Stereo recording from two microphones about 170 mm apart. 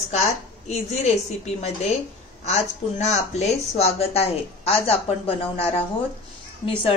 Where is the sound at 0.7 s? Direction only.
40° left (ahead or behind).